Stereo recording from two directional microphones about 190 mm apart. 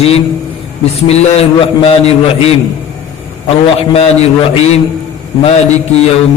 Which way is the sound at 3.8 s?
30° left (ahead or behind).